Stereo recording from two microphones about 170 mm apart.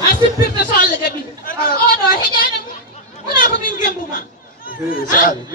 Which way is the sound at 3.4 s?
55° left (ahead or behind).